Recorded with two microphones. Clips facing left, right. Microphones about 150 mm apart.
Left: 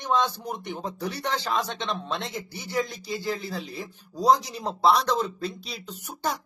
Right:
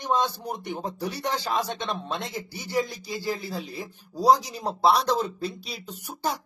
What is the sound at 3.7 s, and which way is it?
Speech, 5° right (ahead or behind).